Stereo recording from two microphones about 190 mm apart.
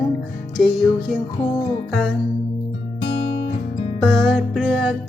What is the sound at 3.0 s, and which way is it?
Guitar, 30° left (ahead or behind).